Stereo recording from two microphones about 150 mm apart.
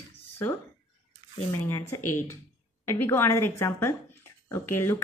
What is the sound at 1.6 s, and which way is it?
Speech, 15° left (ahead or behind).